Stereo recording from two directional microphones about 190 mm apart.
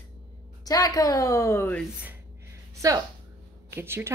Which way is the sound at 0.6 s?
20° left (ahead or behind).